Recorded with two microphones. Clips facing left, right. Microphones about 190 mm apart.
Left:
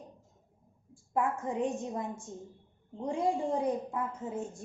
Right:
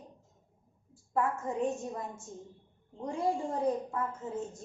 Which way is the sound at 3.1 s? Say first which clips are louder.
Left 2 dB; 15° left (ahead or behind).